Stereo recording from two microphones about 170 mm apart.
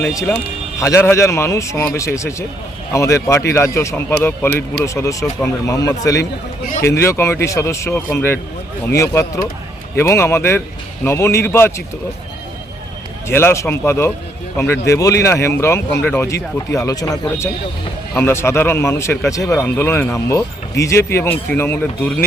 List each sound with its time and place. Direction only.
0.8 s speech: 15° left (ahead or behind)
13.2 s speech: 15° left (ahead or behind)